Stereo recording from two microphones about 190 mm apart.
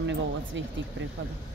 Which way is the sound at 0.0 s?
70° right (ahead or behind).